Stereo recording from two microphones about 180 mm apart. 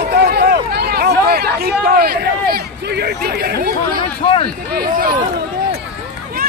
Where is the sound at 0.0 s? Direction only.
60° right (ahead or behind).